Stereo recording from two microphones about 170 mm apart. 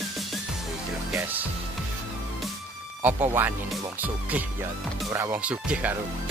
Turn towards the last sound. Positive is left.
turn(degrees=-5)  # may be behind; listen again after turning